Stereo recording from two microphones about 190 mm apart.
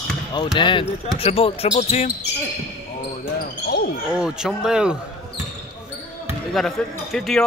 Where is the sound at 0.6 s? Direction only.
25° left (ahead or behind).